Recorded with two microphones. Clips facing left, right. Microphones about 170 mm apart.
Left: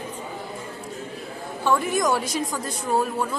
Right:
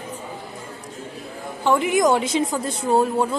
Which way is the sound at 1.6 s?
20° right (ahead or behind).